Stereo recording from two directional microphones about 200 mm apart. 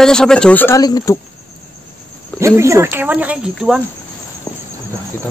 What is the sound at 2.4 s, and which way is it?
Speech, 15° right (ahead or behind).